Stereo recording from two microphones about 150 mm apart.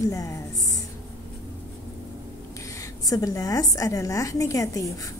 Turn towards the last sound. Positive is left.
turn(degrees=20)  # may be behind; listen again after turning